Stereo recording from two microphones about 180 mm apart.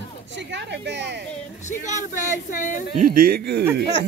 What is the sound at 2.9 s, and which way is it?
Speech, 50° right (ahead or behind).